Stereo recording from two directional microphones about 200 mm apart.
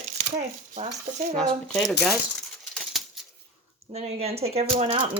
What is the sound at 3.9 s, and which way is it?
Speech, 30° right (ahead or behind).